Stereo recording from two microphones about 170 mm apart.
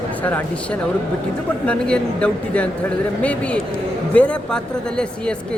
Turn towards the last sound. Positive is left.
turn(degrees=5)  # may be behind; listen again after turning